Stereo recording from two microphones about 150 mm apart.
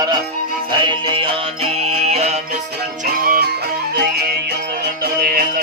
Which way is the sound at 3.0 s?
80° right.